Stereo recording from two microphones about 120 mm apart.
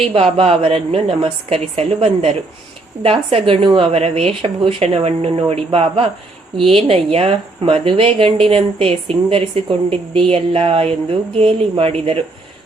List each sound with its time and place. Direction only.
0.0 s a woman's voice: 55° right (ahead or behind)